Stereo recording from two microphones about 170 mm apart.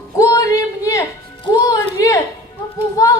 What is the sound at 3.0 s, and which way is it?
Child singing, 20° left (ahead or behind).